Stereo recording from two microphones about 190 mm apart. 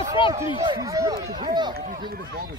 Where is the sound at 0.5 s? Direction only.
25° right (ahead or behind).